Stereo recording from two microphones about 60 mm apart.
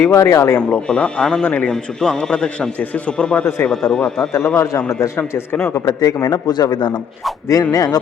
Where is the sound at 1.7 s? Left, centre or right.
Centre.